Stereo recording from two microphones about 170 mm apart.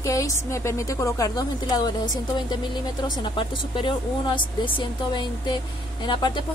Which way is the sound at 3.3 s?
30° left (ahead or behind).